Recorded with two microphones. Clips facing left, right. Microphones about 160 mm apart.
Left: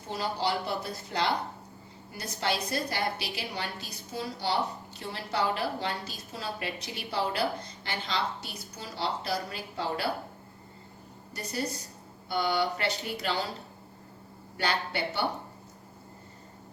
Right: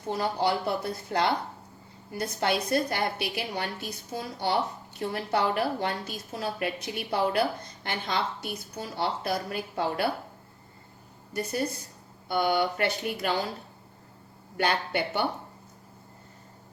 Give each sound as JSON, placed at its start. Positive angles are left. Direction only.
{"t": 0.2, "sound": "a woman's voice", "side_deg": -55}
{"t": 11.3, "sound": "a woman's voice", "side_deg": -55}
{"t": 14.6, "sound": "a woman's voice", "side_deg": -55}